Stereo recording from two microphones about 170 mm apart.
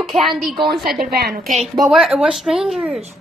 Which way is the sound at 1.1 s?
70° right (ahead or behind).